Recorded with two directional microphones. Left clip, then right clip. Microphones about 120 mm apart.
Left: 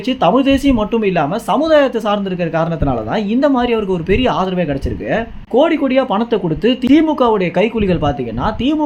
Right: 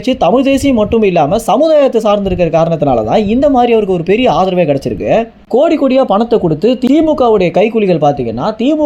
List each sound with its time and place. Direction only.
0.1 s speech: 35° right (ahead or behind)